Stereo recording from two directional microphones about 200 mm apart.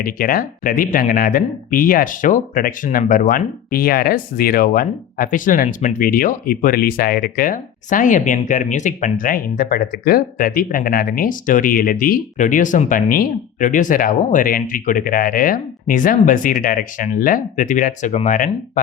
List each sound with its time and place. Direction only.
0.0 s speech: 45° left (ahead or behind)